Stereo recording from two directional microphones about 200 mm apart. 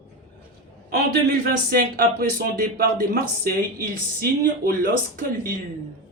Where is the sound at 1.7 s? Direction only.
50° right (ahead or behind).